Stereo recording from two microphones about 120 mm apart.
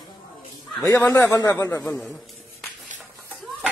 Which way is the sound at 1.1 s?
25° left (ahead or behind).